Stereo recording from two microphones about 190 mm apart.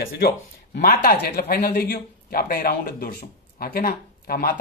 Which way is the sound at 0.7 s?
50° left (ahead or behind).